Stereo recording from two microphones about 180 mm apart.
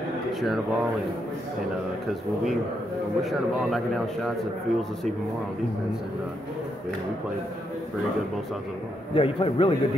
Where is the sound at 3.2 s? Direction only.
Centre (ahead or behind).